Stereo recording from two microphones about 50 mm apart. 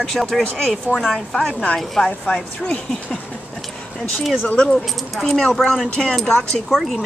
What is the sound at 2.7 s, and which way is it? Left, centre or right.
Speech, centre.